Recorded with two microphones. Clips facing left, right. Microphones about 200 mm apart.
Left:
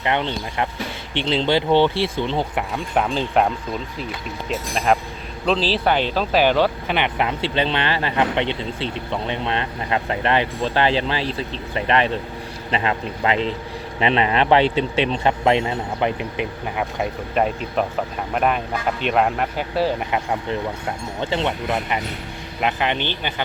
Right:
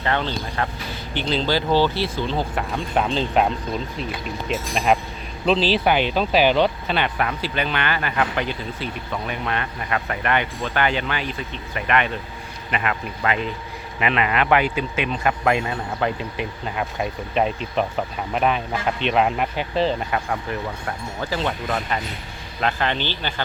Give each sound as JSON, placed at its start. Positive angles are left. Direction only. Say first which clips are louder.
{"t": 0.0, "sound": "speech", "louder": "left 1 dB", "side_deg": 20}
{"t": 2.7, "sound": "speech", "louder": "left 1 dB", "side_deg": 10}
{"t": 5.5, "sound": "speech", "louder": "right 2 dB", "side_deg": 30}
{"t": 6.1, "sound": "speech", "louder": "even", "side_deg": -10}
{"t": 6.6, "sound": "speech", "louder": "left 1 dB", "side_deg": 15}
{"t": 17.3, "sound": "speech", "louder": "left 1 dB", "side_deg": 5}
{"t": 19.7, "sound": "speech", "louder": "left 1 dB", "side_deg": 10}